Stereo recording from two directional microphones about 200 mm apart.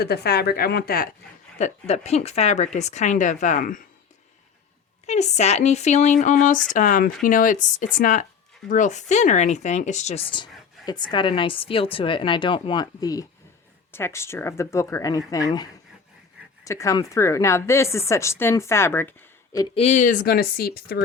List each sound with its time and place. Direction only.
0.0 s speech: 55° left (ahead or behind)
1.5 s speech: 35° left (ahead or behind)
5.0 s a woman's voice: 35° left (ahead or behind); by 19.6 s 10° left (ahead or behind)
19.7 s speech: 35° left (ahead or behind); by 21.0 s 50° left (ahead or behind)